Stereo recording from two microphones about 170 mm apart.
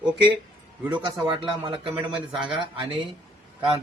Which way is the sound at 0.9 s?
30° right (ahead or behind).